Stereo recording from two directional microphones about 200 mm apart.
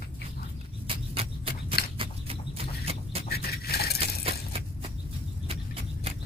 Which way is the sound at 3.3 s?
50° left (ahead or behind).